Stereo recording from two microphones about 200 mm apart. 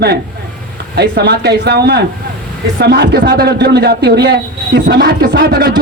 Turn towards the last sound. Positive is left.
turn(degrees=-50)  # may be behind; listen again after turning